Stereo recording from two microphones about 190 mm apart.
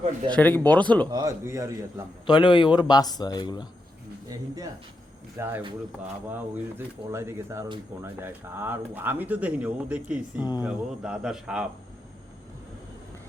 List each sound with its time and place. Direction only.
0.3 s speech: 10° left (ahead or behind)
1.1 s speech: 15° right (ahead or behind)
2.2 s a man's voice: 25° left (ahead or behind)
4.3 s speech: 20° right (ahead or behind)